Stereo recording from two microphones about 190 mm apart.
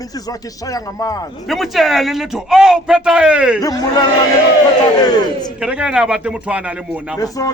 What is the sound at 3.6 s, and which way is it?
Speech, 20° left (ahead or behind).